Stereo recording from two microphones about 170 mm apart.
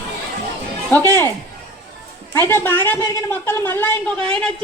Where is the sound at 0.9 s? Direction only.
15° left (ahead or behind).